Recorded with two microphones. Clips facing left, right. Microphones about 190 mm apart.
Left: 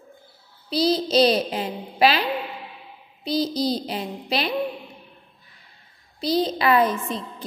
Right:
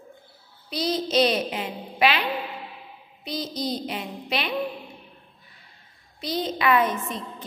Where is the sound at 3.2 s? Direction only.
35° left (ahead or behind).